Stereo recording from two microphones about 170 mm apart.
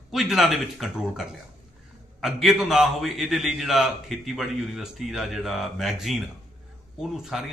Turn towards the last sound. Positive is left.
turn(degrees=0)  # may be behind; listen again after turning